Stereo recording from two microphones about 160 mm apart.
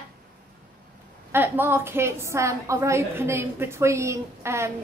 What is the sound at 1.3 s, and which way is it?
A woman's voice, 15° right (ahead or behind).